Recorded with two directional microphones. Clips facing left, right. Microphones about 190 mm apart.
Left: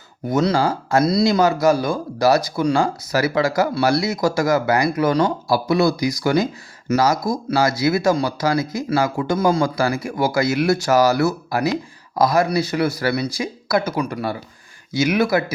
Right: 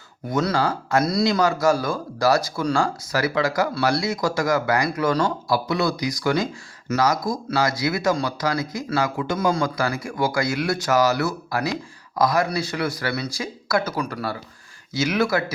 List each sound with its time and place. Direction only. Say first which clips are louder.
0.3 s speech: left 4 dB; 25° left (ahead or behind)